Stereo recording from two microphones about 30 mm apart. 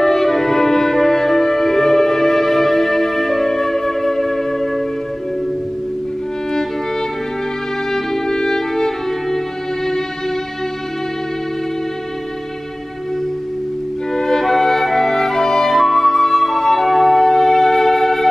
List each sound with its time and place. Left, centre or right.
0.0 s music: centre
7.9 s music: centre
14.1 s music: centre